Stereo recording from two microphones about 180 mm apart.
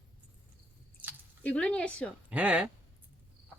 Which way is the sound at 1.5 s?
5° left (ahead or behind).